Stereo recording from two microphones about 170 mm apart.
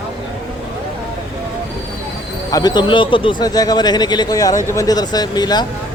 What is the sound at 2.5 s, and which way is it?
A man's voice, 20° left (ahead or behind).